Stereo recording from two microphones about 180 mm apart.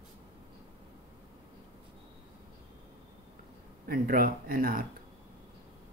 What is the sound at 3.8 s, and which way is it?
Speech, 50° right (ahead or behind).